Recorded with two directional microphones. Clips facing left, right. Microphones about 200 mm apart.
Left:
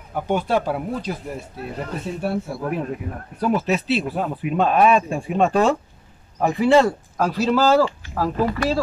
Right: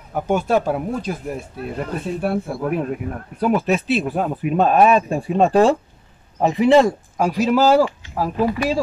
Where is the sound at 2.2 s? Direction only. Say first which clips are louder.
Right 2 dB; 55° right (ahead or behind); by 5.7 s 35° right (ahead or behind).